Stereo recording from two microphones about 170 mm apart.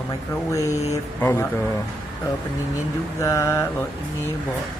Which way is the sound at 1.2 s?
15° left (ahead or behind).